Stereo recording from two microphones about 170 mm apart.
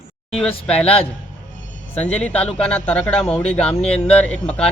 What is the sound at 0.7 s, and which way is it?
Speech, 5° left (ahead or behind).